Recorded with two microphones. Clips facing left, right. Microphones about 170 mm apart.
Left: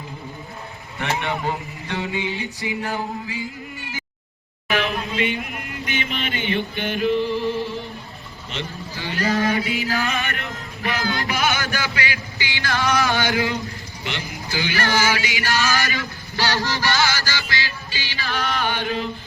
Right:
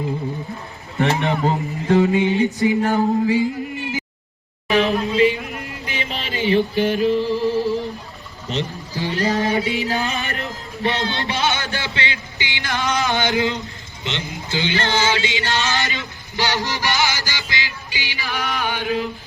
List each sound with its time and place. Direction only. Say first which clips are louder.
0.9 s speech: right 6 dB; 35° right (ahead or behind)
4.7 s a sound: right 6 dB; 35° right (ahead or behind)
5.1 s a man's voice: right 8 dB; 35° right (ahead or behind)
5.8 s music: left 3 dB; 30° right (ahead or behind)
8.4 s speech: right 6 dB; 40° right (ahead or behind)
9.6 s music: right 2 dB; 35° right (ahead or behind); by 19.1 s 5° right (ahead or behind)